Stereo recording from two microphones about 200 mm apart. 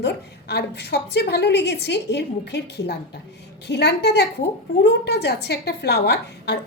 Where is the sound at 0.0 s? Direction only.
55° left (ahead or behind).